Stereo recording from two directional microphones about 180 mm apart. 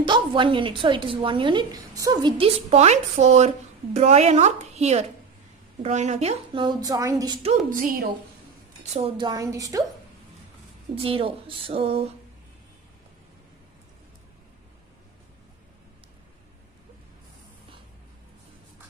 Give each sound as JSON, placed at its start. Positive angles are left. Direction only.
{"t": 0.0, "sound": "a woman's voice", "side_deg": -25}
{"t": 7.4, "sound": "speech", "side_deg": -50}
{"t": 8.9, "sound": "a woman's voice", "side_deg": -30}
{"t": 11.0, "sound": "speech", "side_deg": -30}